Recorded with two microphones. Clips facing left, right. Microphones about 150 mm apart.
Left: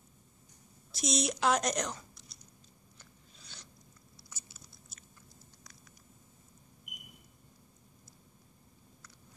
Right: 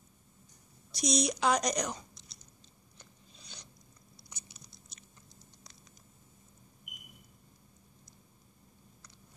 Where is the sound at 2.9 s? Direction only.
20° right (ahead or behind).